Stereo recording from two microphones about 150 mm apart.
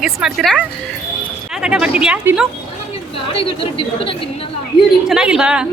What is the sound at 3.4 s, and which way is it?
Speech, 35° left (ahead or behind).